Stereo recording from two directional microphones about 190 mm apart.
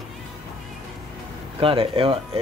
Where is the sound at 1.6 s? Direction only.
30° right (ahead or behind).